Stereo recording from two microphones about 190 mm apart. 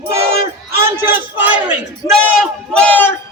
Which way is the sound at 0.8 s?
10° right (ahead or behind).